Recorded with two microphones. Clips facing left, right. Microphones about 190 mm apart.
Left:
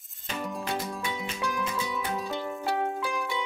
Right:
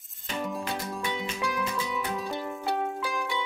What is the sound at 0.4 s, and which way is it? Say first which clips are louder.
Music: even; centre (ahead or behind).